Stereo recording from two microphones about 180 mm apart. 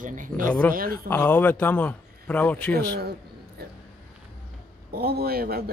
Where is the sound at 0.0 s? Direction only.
45° right (ahead or behind).